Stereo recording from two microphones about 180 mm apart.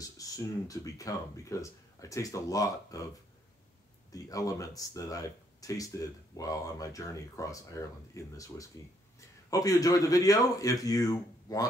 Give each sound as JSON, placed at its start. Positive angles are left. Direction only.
{"t": 0.0, "sound": "speech", "side_deg": 20}
{"t": 4.1, "sound": "speech", "side_deg": 20}